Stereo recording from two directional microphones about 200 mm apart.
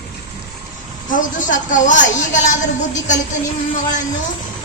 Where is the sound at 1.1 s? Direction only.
40° left (ahead or behind).